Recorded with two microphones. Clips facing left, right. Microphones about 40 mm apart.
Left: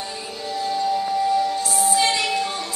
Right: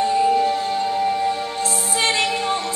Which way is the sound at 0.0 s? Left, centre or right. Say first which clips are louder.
Right 14 dB; right.